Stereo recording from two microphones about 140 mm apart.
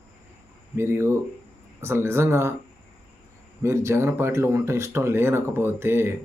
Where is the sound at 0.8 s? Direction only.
20° right (ahead or behind).